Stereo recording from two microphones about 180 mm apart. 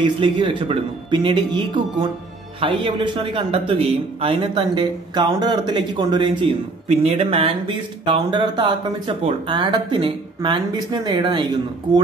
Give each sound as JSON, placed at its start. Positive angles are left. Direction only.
{"t": 0.0, "sound": "speech", "side_deg": -30}